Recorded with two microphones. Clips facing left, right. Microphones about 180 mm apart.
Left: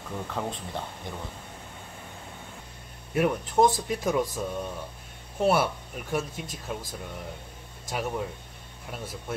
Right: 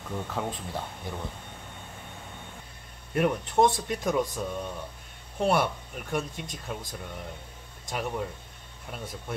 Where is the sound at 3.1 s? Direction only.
Centre (ahead or behind).